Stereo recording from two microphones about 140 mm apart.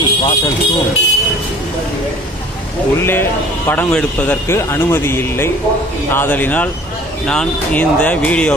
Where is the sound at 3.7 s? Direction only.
10° left (ahead or behind).